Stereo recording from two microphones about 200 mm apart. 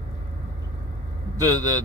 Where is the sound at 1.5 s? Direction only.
90° left.